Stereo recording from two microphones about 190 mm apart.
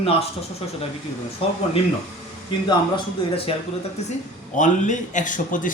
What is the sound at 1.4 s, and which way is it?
Speech, 30° left (ahead or behind).